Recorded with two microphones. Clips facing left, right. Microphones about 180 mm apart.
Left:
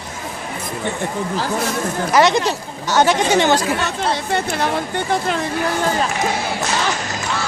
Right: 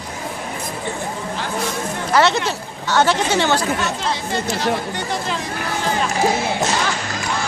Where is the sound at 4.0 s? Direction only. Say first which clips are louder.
Left 3 dB; 55° left (ahead or behind).